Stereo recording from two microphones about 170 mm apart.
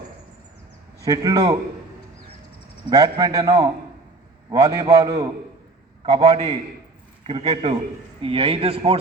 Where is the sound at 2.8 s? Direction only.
20° right (ahead or behind).